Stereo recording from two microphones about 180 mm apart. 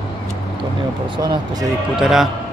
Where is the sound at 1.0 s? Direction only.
25° right (ahead or behind).